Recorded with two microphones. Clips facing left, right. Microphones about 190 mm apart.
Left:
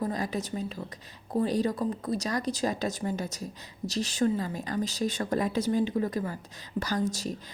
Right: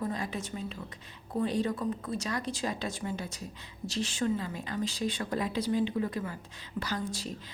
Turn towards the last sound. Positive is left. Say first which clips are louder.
# left 5 dB
turn(degrees=40)  # may be behind; listen again after turning